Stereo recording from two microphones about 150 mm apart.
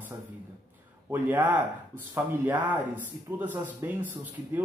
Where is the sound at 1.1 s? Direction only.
10° right (ahead or behind).